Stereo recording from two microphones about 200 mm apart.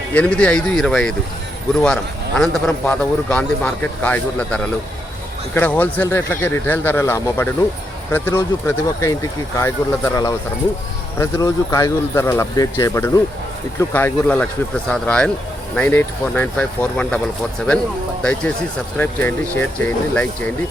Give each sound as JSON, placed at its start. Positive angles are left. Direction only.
{"t": 0.1, "sound": "a man's voice", "side_deg": 5}
{"t": 18.2, "sound": "a man's voice", "side_deg": 5}